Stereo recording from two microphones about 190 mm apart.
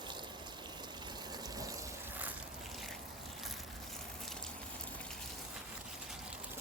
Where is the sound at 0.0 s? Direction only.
25° right (ahead or behind); by 3.0 s centre (ahead or behind).